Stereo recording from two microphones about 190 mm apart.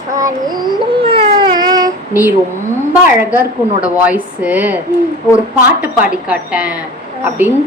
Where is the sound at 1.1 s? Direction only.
25° right (ahead or behind).